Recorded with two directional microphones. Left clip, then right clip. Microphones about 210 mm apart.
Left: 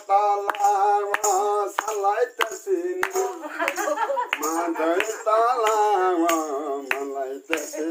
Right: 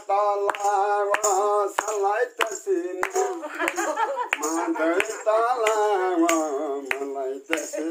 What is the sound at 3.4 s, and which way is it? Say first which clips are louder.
Speech: left 1 dB; 30° right (ahead or behind).